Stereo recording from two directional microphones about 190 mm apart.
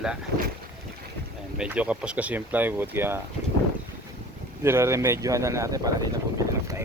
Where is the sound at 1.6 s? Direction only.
5° right (ahead or behind).